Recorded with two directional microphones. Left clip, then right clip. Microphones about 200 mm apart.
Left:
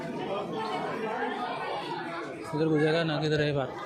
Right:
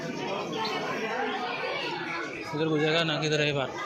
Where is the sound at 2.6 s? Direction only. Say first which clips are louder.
Even; 35° left (ahead or behind).